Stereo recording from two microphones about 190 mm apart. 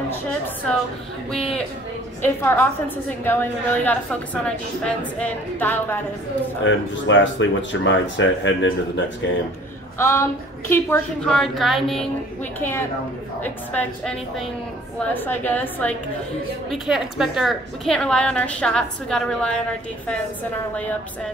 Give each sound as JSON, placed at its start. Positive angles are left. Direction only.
{"t": 0.1, "sound": "a woman's voice", "side_deg": 10}
{"t": 6.6, "sound": "speech", "side_deg": 80}
{"t": 9.9, "sound": "a woman's voice", "side_deg": 15}
{"t": 11.2, "sound": "a woman's voice", "side_deg": 0}
{"t": 12.5, "sound": "a woman's voice", "side_deg": 10}